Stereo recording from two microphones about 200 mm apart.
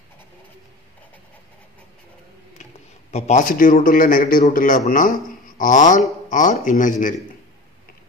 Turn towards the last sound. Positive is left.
turn(degrees=40)  # may be behind; listen again after turning